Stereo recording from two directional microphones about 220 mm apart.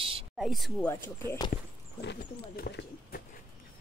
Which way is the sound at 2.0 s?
45° left (ahead or behind).